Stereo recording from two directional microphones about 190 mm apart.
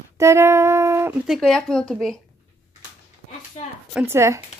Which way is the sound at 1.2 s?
Centre (ahead or behind).